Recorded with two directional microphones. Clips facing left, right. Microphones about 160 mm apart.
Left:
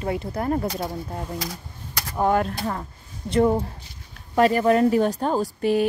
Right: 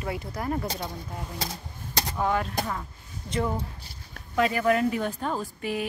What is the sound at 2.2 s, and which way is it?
Speech, 45° left (ahead or behind).